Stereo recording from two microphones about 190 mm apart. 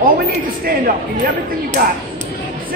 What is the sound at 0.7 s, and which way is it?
Speech, 45° right (ahead or behind).